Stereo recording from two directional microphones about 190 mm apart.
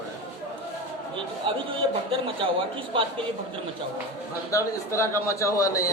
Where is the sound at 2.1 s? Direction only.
30° right (ahead or behind).